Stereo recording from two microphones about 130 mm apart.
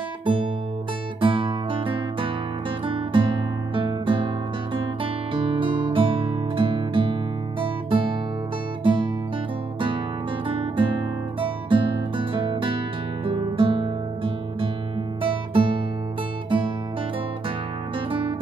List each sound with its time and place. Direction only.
0.2 s music: 40° right (ahead or behind)
1.2 s guitar: 40° right (ahead or behind)
4.7 s music: 40° right (ahead or behind)
10.5 s guitar: 45° right (ahead or behind)
11.3 s music: 40° right (ahead or behind)
17.9 s music: 45° right (ahead or behind)